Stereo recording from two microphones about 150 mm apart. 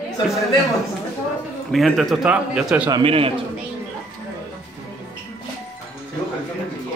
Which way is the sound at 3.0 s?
40° right (ahead or behind).